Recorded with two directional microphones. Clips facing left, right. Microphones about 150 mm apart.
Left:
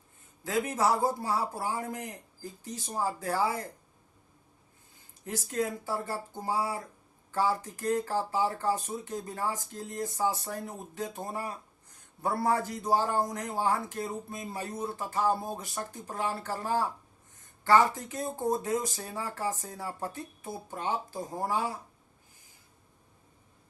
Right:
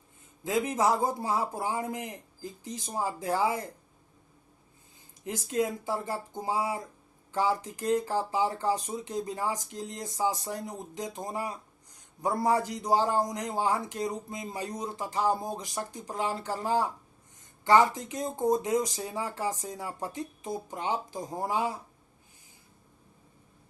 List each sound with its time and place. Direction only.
0.4 s a man's voice: 15° right (ahead or behind)
5.2 s a man's voice: 20° right (ahead or behind)